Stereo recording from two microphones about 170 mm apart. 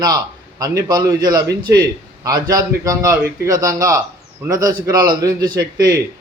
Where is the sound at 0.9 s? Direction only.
20° right (ahead or behind).